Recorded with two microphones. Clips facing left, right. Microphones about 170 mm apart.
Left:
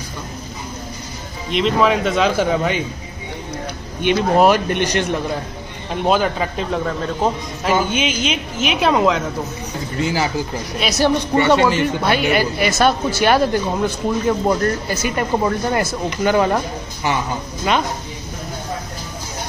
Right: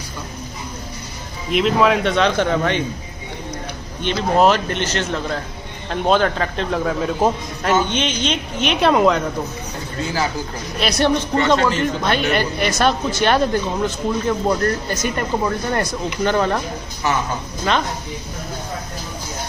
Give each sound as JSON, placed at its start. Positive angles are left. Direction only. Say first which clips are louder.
{"t": 1.5, "sound": "a man's voice", "louder": "even", "side_deg": 0}
{"t": 4.0, "sound": "a man's voice", "louder": "left 2 dB", "side_deg": 10}
{"t": 7.7, "sound": "a man's voice", "louder": "even", "side_deg": 10}
{"t": 9.9, "sound": "speech", "louder": "left 2 dB", "side_deg": 15}
{"t": 10.8, "sound": "a man's voice", "louder": "even", "side_deg": 0}